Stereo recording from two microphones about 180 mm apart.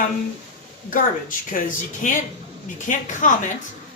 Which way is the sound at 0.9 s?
50° left (ahead or behind).